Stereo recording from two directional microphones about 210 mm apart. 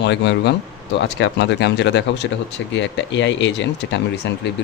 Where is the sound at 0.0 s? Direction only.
55° left (ahead or behind).